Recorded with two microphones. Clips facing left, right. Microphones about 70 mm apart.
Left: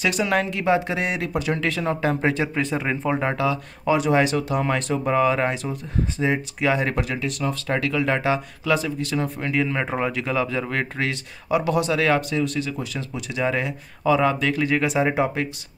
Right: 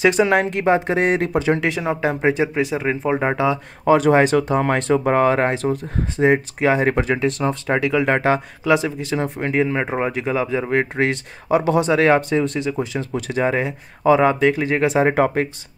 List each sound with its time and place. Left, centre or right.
0.0 s speech: right
0.5 s speech: right
1.3 s speech: right
1.7 s speech: centre
3.2 s speech: right
3.8 s speech: right
7.7 s speech: centre
8.0 s speech: right
8.6 s speech: right
13.1 s speech: right